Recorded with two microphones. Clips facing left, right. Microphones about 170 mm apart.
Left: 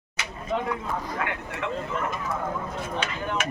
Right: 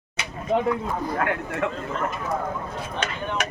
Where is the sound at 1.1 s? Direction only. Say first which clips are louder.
Right 6 dB; 50° right (ahead or behind).